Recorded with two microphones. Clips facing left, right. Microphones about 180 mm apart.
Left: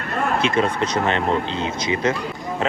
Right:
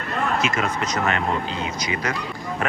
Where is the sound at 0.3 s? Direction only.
30° left (ahead or behind).